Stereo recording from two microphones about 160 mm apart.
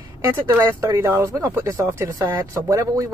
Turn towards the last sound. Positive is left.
turn(degrees=-20)  # may be behind; listen again after turning